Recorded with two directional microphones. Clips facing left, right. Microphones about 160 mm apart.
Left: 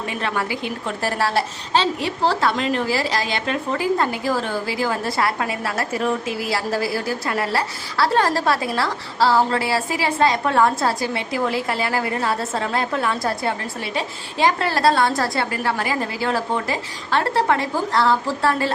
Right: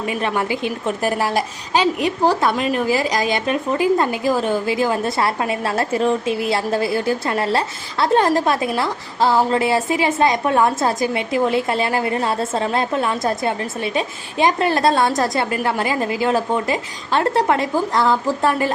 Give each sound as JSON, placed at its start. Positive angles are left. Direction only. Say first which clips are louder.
{"t": 0.2, "sound": "a woman's voice", "louder": "right 2 dB", "side_deg": -20}